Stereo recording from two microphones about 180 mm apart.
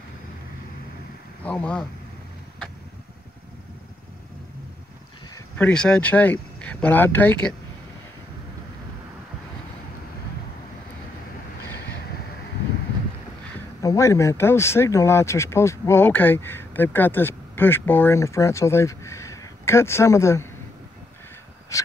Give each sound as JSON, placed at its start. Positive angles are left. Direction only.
{"t": 1.4, "sound": "speech", "side_deg": 5}
{"t": 5.6, "sound": "speech", "side_deg": 5}
{"t": 13.8, "sound": "speech", "side_deg": 15}
{"t": 21.7, "sound": "a sound", "side_deg": 15}